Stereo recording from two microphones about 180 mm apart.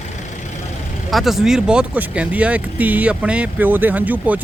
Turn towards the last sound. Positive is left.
turn(degrees=-10)  # may be behind; listen again after turning